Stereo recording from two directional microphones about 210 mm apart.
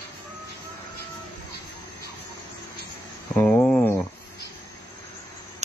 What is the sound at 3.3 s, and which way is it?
Cricket, 5° left (ahead or behind).